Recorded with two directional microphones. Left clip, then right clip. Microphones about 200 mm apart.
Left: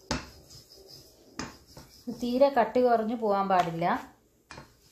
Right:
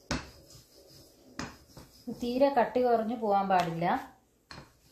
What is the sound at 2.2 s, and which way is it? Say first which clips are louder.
Speech: left 2 dB; 35° left (ahead or behind).